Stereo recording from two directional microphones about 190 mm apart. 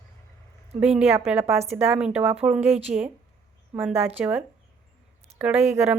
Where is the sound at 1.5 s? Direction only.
35° right (ahead or behind).